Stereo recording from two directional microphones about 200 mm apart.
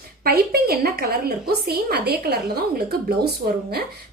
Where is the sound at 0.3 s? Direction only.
50° right (ahead or behind).